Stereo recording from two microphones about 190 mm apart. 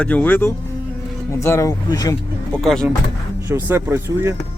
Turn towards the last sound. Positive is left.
turn(degrees=-15)  # may be behind; listen again after turning